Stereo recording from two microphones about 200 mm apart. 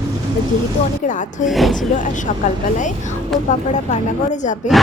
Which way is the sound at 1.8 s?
40° left (ahead or behind).